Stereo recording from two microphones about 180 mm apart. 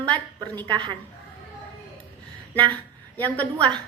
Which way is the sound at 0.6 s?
25° right (ahead or behind).